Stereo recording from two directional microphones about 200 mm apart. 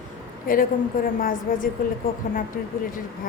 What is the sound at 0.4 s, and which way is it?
A woman's voice, 45° left (ahead or behind).